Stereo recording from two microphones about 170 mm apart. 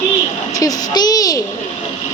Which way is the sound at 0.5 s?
20° left (ahead or behind).